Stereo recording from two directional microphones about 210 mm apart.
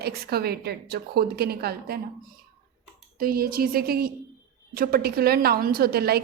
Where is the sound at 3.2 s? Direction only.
45° right (ahead or behind).